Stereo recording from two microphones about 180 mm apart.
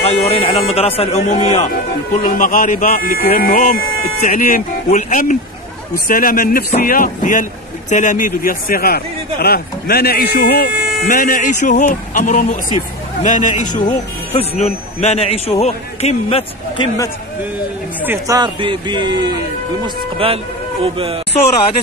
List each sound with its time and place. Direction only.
0.0 s a man's voice: 35° left (ahead or behind)
2.2 s a man's voice: 50° left (ahead or behind)
11.1 s a man's voice: 45° left (ahead or behind); by 17.1 s 25° left (ahead or behind)
18.0 s speech: 15° right (ahead or behind)
20.8 s speech: 35° right (ahead or behind)